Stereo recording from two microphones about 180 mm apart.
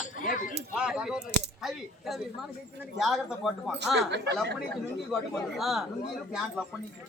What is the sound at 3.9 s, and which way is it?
Speech, 70° right (ahead or behind).